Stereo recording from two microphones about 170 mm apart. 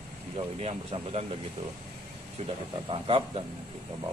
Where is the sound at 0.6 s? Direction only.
40° right (ahead or behind).